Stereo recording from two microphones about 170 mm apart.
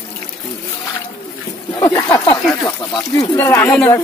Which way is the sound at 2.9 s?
20° left (ahead or behind).